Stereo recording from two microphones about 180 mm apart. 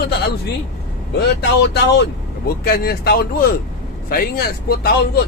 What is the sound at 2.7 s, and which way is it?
A man's voice, 60° left (ahead or behind).